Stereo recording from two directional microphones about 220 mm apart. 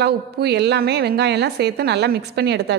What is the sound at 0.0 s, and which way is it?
A woman's voice, 50° right (ahead or behind).